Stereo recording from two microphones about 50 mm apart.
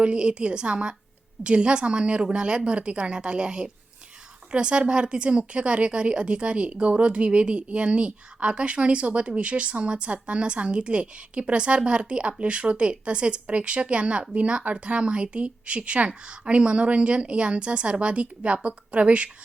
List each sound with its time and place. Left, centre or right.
0.0 s a woman's voice: centre